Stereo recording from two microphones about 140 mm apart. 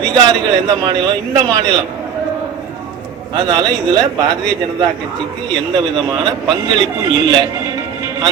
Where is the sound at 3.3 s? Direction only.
30° right (ahead or behind).